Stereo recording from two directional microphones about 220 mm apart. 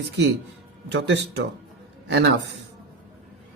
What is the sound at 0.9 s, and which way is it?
Speech, 50° right (ahead or behind).